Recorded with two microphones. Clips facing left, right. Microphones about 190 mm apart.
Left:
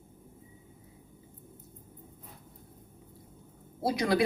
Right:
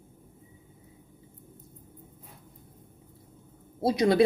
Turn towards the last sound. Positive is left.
turn(degrees=-25)  # may be behind; listen again after turning